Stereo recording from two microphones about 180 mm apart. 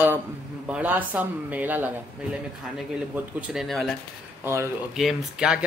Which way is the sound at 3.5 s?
Centre (ahead or behind).